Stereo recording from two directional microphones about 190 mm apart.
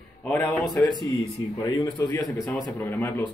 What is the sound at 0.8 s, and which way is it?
A man's voice, 25° left (ahead or behind).